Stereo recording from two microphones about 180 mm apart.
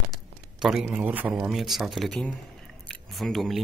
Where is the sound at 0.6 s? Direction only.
5° right (ahead or behind).